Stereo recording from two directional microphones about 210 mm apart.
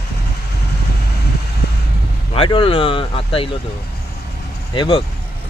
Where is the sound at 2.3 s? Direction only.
25° left (ahead or behind).